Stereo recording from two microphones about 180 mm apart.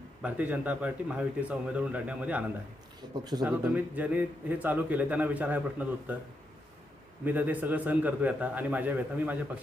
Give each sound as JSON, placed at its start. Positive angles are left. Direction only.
{"t": 0.2, "sound": "a man's voice", "side_deg": -5}
{"t": 3.0, "sound": "speech", "side_deg": -20}
{"t": 3.4, "sound": "a man's voice", "side_deg": -10}
{"t": 7.3, "sound": "a man's voice", "side_deg": -10}